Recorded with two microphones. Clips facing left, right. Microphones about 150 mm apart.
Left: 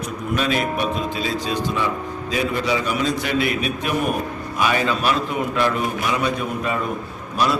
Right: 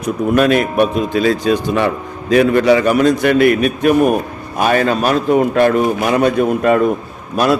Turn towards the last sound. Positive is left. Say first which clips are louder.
# right 7 dB
turn(degrees=-55)  # may be behind; listen again after turning